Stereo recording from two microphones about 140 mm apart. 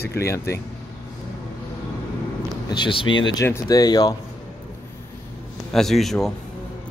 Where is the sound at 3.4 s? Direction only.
25° left (ahead or behind).